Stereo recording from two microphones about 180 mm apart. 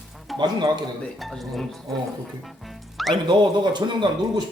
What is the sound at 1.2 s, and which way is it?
Speech, centre (ahead or behind).